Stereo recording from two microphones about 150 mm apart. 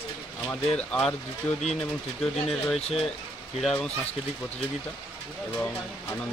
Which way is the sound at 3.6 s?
5° left (ahead or behind).